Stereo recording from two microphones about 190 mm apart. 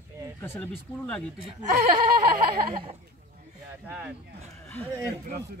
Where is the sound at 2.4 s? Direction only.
25° right (ahead or behind).